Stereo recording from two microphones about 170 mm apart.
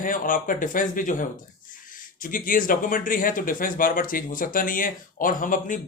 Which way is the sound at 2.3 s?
55° left (ahead or behind).